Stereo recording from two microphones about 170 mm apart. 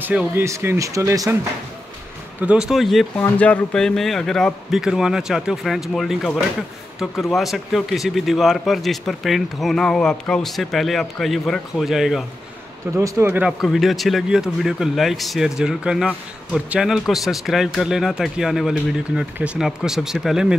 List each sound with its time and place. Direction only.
0.0 s speech: 10° right (ahead or behind)
2.4 s speech: 5° right (ahead or behind)
12.9 s speech: 15° right (ahead or behind)